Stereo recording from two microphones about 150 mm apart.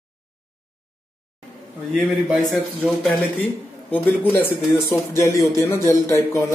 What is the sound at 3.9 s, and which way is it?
Speech, 10° left (ahead or behind).